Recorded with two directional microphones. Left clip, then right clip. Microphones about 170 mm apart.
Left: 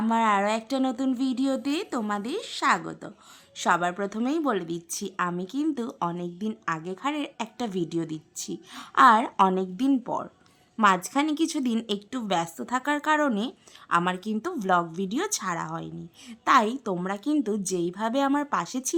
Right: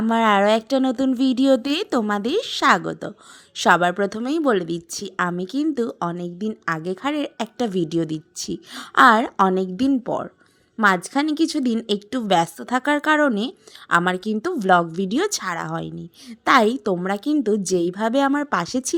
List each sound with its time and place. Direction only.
0.1 s a woman's voice: 30° right (ahead or behind)